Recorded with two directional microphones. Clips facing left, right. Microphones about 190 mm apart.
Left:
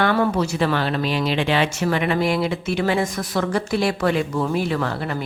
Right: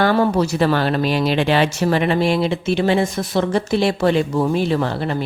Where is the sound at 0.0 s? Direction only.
35° right (ahead or behind).